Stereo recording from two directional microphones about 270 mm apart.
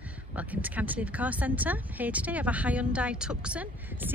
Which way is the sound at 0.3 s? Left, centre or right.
Centre.